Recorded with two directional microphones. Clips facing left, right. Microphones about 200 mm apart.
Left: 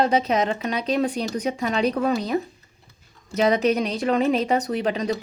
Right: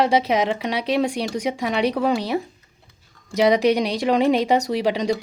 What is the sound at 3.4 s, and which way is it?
Speech, 80° right.